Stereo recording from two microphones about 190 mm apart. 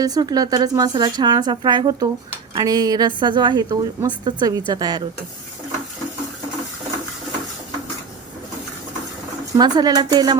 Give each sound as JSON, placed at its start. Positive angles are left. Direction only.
{"t": 0.0, "sound": "speech", "side_deg": -20}
{"t": 9.6, "sound": "speech", "side_deg": -20}